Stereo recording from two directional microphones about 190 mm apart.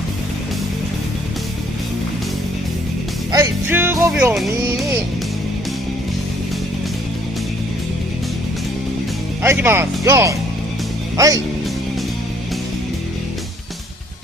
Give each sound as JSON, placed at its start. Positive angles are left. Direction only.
{"t": 3.3, "sound": "music", "side_deg": -15}
{"t": 4.1, "sound": "speech", "side_deg": -10}
{"t": 9.4, "sound": "speech", "side_deg": -10}